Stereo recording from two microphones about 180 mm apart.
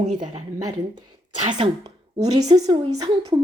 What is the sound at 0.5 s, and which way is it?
Speech, 20° right (ahead or behind).